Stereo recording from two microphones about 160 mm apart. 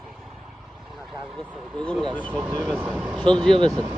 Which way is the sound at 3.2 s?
5° left (ahead or behind).